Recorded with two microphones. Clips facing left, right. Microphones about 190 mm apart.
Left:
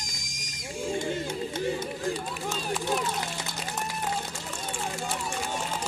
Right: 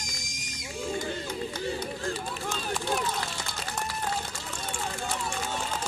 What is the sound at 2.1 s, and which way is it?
Run, 5° left (ahead or behind).